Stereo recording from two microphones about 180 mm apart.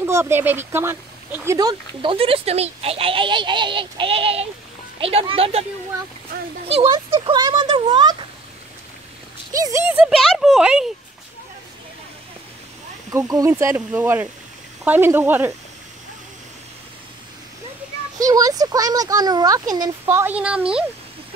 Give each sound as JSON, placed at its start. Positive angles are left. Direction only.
{"t": 0.0, "sound": "speech", "side_deg": -15}
{"t": 6.9, "sound": "speech", "side_deg": -25}
{"t": 9.5, "sound": "speech", "side_deg": -20}
{"t": 13.1, "sound": "speech", "side_deg": -15}
{"t": 18.2, "sound": "speech", "side_deg": -20}